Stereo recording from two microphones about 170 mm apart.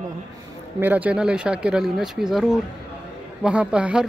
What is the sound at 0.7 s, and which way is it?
Speech, 10° right (ahead or behind).